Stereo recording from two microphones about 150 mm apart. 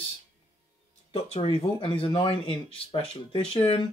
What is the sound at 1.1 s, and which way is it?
Speech, 40° left (ahead or behind).